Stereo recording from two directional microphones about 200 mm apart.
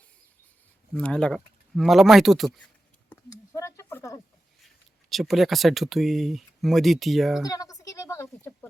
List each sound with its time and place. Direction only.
0.9 s speech: 5° left (ahead or behind)
3.1 s a sound: 15° left (ahead or behind)
4.6 s speech: centre (ahead or behind)
7.4 s a woman's voice: 20° left (ahead or behind)